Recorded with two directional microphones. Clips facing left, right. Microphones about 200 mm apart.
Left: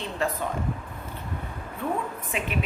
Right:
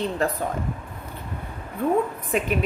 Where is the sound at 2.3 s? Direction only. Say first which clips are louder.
Right 8 dB; 45° right (ahead or behind).